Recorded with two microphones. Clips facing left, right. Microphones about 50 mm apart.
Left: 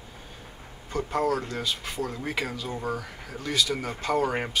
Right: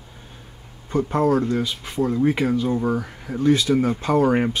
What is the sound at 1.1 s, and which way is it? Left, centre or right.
Speech, right.